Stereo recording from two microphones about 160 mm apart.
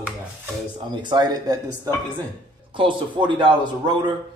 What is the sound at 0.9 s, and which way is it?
Speech, 30° right (ahead or behind).